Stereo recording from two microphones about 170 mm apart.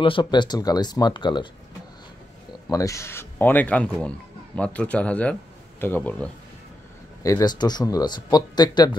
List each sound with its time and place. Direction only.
0.0 s speech: 30° left (ahead or behind)
2.7 s speech: 20° left (ahead or behind)
7.2 s speech: 20° left (ahead or behind)